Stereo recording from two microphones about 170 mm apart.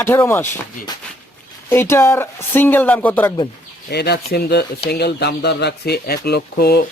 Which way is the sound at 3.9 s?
75° left (ahead or behind).